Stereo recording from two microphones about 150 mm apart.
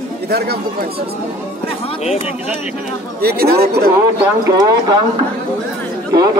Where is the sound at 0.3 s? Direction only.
90° right.